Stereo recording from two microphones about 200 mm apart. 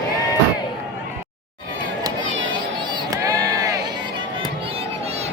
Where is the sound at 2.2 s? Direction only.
70° right (ahead or behind).